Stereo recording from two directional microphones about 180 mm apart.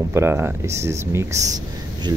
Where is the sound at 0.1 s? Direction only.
15° right (ahead or behind).